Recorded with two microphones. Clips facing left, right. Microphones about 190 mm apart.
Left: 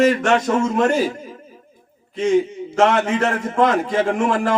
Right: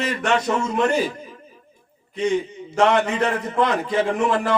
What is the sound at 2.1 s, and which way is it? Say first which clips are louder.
A man's voice: left 5 dB; 45° left (ahead or behind).